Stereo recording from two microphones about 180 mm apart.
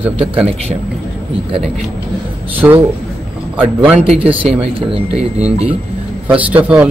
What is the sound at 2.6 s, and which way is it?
Speech, 10° right (ahead or behind).